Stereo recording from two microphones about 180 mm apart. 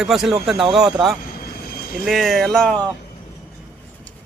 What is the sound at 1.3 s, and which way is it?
Vehicle, 55° left (ahead or behind).